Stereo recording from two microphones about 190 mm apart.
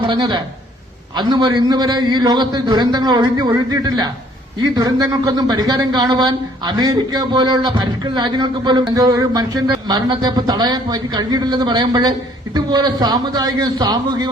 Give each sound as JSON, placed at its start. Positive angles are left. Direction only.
{"t": 0.0, "sound": "a man's voice", "side_deg": -25}